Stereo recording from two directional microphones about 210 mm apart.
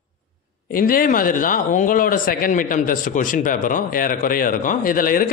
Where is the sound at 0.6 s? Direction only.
45° left (ahead or behind).